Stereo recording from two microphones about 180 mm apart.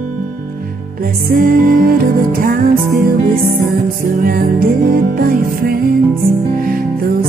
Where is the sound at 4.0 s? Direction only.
50° right (ahead or behind).